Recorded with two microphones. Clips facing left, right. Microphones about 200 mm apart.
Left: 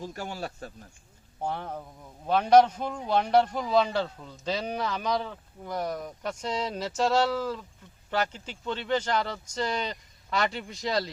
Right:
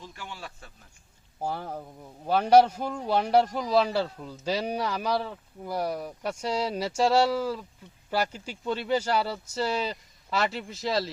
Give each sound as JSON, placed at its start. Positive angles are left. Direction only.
{"t": 0.0, "sound": "speech", "side_deg": 40}
{"t": 1.4, "sound": "a man's voice", "side_deg": -5}